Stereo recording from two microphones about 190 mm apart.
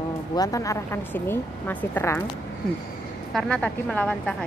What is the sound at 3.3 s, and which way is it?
A woman's voice, 5° left (ahead or behind).